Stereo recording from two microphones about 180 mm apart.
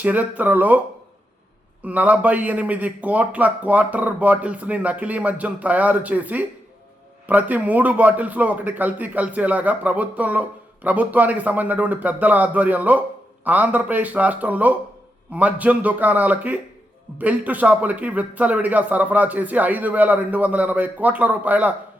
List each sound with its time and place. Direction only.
0.0 s a man's voice: 10° right (ahead or behind)
1.8 s a man's voice: 10° right (ahead or behind)